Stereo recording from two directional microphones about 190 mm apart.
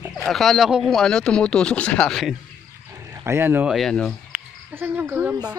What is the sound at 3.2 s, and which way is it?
Speech, 10° right (ahead or behind).